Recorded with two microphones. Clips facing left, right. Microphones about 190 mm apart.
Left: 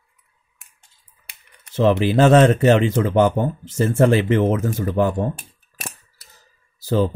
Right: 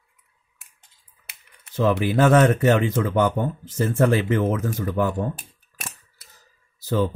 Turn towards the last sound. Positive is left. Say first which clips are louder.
# left 3 dB
turn(degrees=30)  # may be behind; listen again after turning